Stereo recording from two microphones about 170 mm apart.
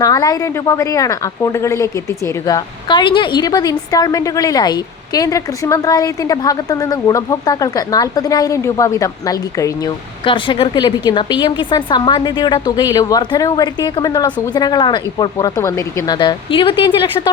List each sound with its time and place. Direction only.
0.0 s a woman's voice: 20° left (ahead or behind)
10.2 s a woman's voice: 30° left (ahead or behind)